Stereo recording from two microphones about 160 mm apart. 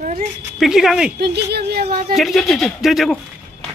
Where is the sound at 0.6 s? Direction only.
5° right (ahead or behind).